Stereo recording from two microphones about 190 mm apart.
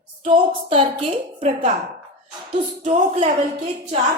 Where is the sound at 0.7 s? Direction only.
30° right (ahead or behind).